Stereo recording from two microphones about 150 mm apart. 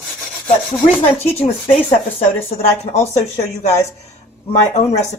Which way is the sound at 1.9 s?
45° left (ahead or behind).